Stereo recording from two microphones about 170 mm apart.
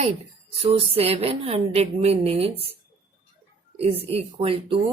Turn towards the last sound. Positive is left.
turn(degrees=-35)  # may be behind; listen again after turning